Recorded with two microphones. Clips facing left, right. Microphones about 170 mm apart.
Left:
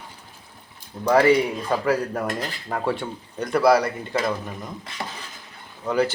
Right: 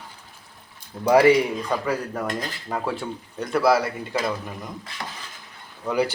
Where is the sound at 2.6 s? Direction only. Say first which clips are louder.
Left 2 dB; centre (ahead or behind).